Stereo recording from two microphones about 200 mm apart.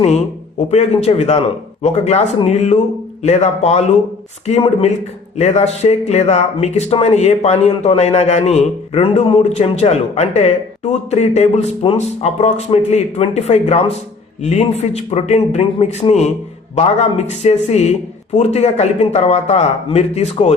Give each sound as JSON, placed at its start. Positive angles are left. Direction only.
{"t": 0.7, "sound": "speech", "side_deg": 35}